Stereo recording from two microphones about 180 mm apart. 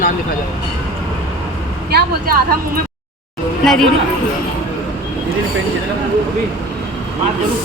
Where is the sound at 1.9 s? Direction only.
65° right (ahead or behind).